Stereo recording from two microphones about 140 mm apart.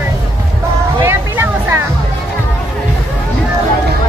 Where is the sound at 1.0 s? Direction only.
15° right (ahead or behind).